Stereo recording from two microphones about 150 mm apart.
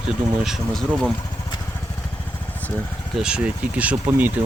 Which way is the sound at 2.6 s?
10° left (ahead or behind).